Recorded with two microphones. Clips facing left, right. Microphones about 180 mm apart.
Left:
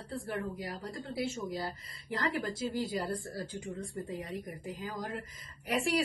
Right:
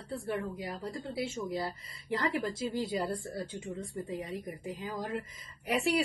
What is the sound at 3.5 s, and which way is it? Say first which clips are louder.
Speech: right 1 dB; 25° right (ahead or behind).